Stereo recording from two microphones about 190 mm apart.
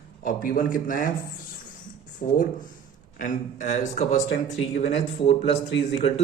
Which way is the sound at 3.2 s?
40° left (ahead or behind).